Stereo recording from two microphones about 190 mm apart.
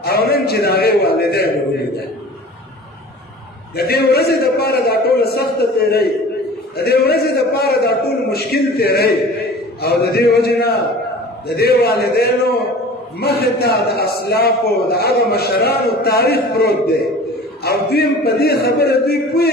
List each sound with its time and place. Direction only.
0.0 s a man's voice: 55° left (ahead or behind)
3.7 s a man's voice: 55° left (ahead or behind)